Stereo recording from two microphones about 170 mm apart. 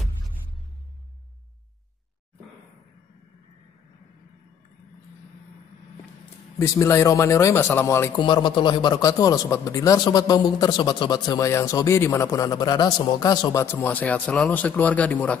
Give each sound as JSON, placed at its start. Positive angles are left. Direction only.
{"t": 6.6, "sound": "a man's voice", "side_deg": 15}
{"t": 8.2, "sound": "a man's voice", "side_deg": 30}